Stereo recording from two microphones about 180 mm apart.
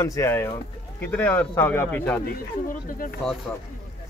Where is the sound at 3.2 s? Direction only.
Centre (ahead or behind).